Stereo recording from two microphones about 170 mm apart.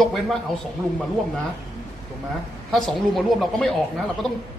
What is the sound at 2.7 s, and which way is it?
A man's voice, centre (ahead or behind).